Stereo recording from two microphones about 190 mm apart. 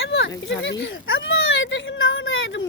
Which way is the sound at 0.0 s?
85° left.